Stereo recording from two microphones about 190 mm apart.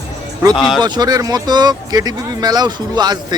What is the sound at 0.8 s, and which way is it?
Speech, 20° right (ahead or behind).